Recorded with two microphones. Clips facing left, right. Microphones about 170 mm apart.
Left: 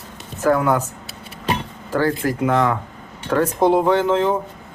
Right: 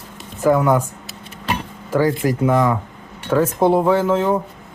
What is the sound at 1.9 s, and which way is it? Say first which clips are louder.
A man's voice: right 2 dB; 15° right (ahead or behind).